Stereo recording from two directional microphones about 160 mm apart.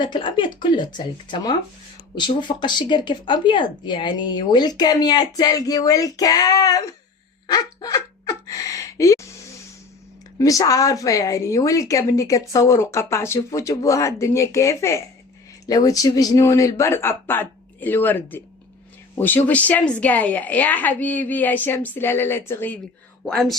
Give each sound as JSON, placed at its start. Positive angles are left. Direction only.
{"t": 0.0, "sound": "speech", "side_deg": 30}
{"t": 7.4, "sound": "a sound", "side_deg": 25}
{"t": 10.3, "sound": "a woman's voice", "side_deg": 20}
{"t": 23.2, "sound": "speech", "side_deg": 0}